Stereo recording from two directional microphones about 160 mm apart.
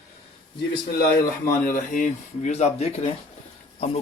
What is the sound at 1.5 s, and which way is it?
Speech, 60° left (ahead or behind).